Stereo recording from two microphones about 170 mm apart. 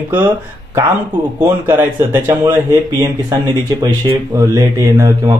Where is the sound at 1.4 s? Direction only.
15° right (ahead or behind).